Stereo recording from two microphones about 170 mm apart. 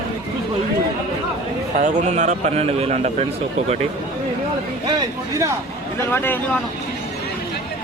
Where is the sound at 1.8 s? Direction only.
45° right (ahead or behind).